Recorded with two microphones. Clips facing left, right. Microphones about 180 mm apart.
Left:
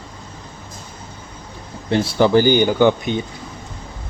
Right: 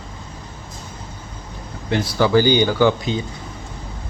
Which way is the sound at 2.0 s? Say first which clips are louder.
Left 2 dB; 20° left (ahead or behind).